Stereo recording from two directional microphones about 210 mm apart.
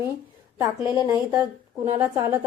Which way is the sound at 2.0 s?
10° right (ahead or behind).